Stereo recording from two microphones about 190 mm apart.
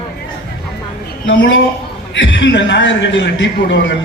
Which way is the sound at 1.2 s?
75° left (ahead or behind).